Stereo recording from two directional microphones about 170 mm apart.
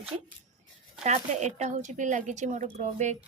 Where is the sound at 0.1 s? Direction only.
35° right (ahead or behind).